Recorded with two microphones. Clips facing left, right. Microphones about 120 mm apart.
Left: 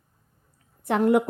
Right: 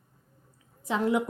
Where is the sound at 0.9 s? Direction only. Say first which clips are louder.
Left 6 dB; 55° left (ahead or behind).